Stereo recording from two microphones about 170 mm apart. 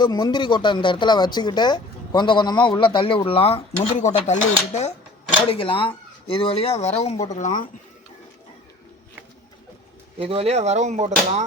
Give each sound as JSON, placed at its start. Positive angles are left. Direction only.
{"t": 0.0, "sound": "speech", "side_deg": 25}
{"t": 3.9, "sound": "chopping", "side_deg": 45}
{"t": 5.5, "sound": "speech", "side_deg": 30}
{"t": 7.3, "sound": "chopping", "side_deg": 45}
{"t": 10.2, "sound": "speech", "side_deg": -35}